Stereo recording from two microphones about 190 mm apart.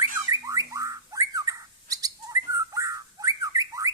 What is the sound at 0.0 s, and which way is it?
Bird, 15° right (ahead or behind).